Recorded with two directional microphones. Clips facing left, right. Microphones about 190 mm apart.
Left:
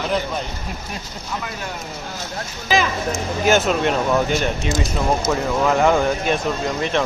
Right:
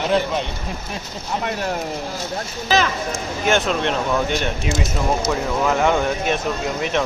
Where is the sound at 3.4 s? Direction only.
5° left (ahead or behind).